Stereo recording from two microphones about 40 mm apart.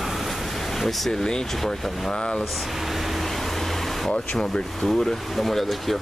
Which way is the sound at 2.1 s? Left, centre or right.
Centre.